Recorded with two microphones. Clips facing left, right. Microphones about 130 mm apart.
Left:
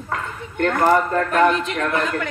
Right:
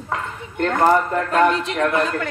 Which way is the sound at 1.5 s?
25° right (ahead or behind).